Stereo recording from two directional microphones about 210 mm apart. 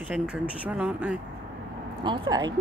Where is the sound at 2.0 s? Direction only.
25° right (ahead or behind).